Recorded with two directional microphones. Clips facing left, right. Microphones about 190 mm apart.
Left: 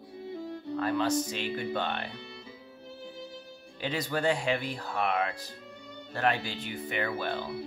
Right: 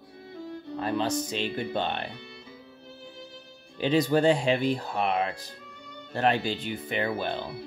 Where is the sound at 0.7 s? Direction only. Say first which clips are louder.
Even; 20° right (ahead or behind).